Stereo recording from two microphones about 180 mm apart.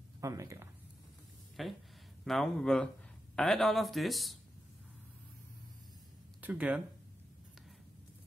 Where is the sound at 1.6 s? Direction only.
Centre (ahead or behind).